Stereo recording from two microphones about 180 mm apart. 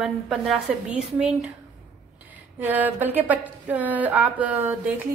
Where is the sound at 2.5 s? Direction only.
10° right (ahead or behind).